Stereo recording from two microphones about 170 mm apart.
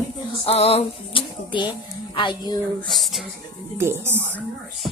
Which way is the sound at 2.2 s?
25° left (ahead or behind).